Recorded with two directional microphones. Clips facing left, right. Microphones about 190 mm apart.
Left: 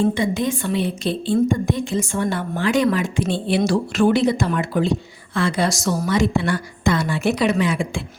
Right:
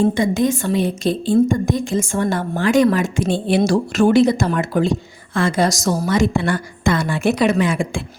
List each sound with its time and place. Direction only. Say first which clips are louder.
0.0 s a woman's voice: right 3 dB; 45° right (ahead or behind)